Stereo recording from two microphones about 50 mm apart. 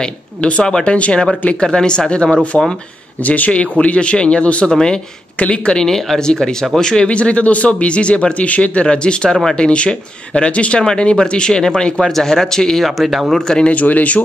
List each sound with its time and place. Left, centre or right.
0.0 s speech: left
5.8 s speech: centre
9.7 s speech: left
12.8 s speech: centre
13.5 s speech: centre
13.7 s speech: left